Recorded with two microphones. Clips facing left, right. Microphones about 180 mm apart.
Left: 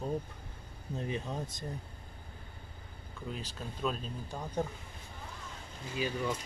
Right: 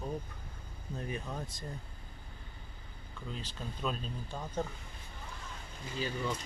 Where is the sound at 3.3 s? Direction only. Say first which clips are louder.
Left 1 dB; 10° left (ahead or behind).